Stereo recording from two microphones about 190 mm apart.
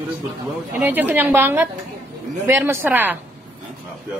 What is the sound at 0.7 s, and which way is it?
Speech, 10° right (ahead or behind).